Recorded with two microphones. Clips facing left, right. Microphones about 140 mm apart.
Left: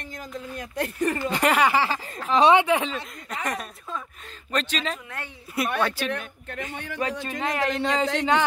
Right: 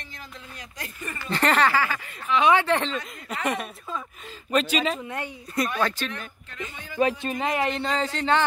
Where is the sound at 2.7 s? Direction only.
10° left (ahead or behind); by 5.0 s 10° right (ahead or behind).